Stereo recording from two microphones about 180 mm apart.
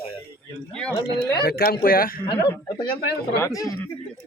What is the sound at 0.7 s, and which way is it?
Speech, 5° left (ahead or behind).